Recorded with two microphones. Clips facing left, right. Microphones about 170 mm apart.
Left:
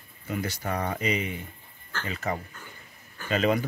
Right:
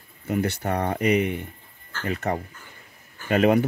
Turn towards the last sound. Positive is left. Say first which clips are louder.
# right 6 dB
turn(degrees=-60)  # may be behind; listen again after turning